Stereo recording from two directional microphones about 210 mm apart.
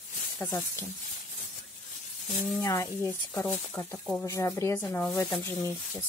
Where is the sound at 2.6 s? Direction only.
15° left (ahead or behind).